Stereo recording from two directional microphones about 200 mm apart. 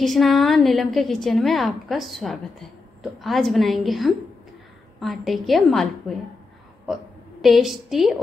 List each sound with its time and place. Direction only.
0.0 s a woman's voice: centre (ahead or behind)
7.4 s a woman's voice: centre (ahead or behind)